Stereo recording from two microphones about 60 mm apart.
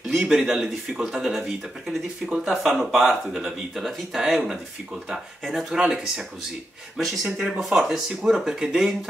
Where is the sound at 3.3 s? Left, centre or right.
Centre.